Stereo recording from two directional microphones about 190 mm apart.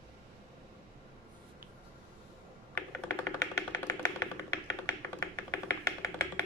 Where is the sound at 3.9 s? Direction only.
15° left (ahead or behind).